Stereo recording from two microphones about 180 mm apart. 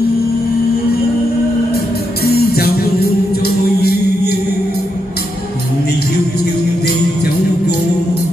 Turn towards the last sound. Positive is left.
turn(degrees=60)  # may be behind; listen again after turning